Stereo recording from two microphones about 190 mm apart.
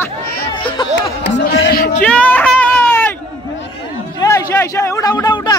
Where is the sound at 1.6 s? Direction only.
55° left (ahead or behind).